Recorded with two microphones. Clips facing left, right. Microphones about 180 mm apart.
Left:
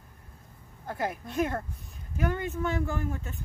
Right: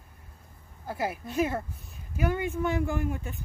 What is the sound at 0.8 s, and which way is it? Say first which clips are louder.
Speech: right 1 dB; 5° right (ahead or behind).